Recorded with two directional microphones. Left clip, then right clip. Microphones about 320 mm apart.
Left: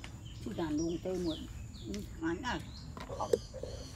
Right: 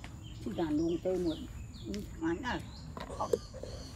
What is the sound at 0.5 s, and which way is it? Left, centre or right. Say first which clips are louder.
Speech: right 3 dB; centre.